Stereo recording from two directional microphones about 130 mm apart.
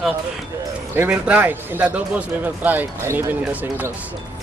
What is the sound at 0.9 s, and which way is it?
A man's voice, 10° right (ahead or behind).